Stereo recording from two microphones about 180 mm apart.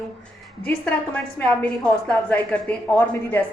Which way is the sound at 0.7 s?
10° left (ahead or behind).